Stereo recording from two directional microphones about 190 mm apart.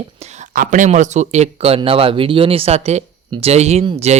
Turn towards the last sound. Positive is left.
turn(degrees=-35)  # may be behind; listen again after turning